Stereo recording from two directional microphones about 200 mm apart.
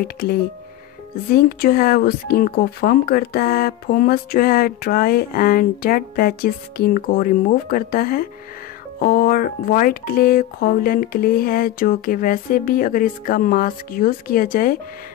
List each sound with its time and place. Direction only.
0.0 s speech: 50° left (ahead or behind)